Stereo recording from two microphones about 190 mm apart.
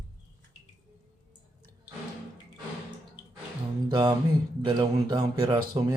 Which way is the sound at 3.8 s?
20° right (ahead or behind).